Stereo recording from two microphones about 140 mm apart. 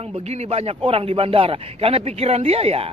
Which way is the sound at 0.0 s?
50° right (ahead or behind).